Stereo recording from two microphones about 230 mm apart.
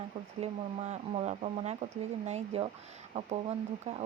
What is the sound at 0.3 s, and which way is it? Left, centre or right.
Speech, right.